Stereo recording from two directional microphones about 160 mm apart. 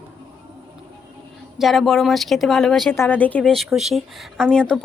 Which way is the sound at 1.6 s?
Centre (ahead or behind).